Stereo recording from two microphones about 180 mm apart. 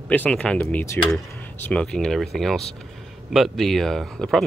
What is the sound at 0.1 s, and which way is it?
Speech, 10° left (ahead or behind).